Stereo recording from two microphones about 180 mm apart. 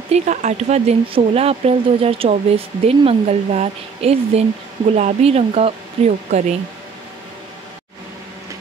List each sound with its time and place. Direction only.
0.1 s speech: 40° right (ahead or behind)